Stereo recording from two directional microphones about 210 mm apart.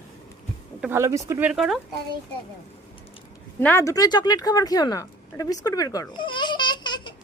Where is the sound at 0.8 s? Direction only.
10° right (ahead or behind).